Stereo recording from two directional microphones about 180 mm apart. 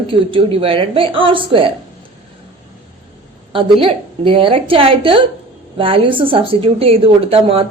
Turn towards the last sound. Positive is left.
turn(degrees=-30)  # may be behind; listen again after turning